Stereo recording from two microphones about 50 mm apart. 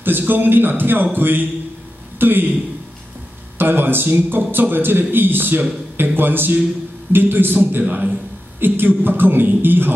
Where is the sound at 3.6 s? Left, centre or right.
Right.